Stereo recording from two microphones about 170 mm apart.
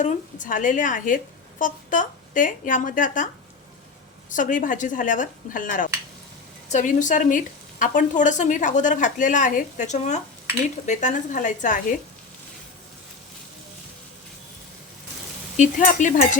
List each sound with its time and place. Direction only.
0.0 s a woman's voice: 50° left (ahead or behind)
4.3 s a woman's voice: 50° left (ahead or behind)
15.5 s a woman's voice: 50° left (ahead or behind)